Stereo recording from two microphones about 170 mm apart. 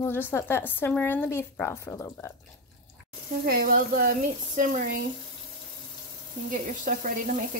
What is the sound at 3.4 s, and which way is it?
Speech, 60° right (ahead or behind).